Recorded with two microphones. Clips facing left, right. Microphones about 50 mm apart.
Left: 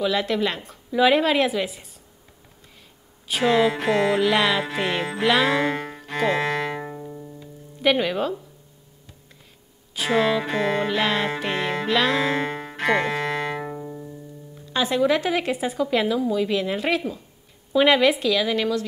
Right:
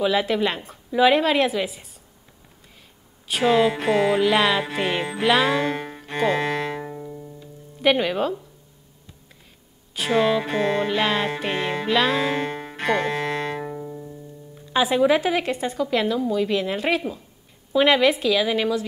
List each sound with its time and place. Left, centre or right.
0.0 s music: centre
3.3 s music: centre
6.7 s music: centre
9.9 s music: centre
14.7 s music: centre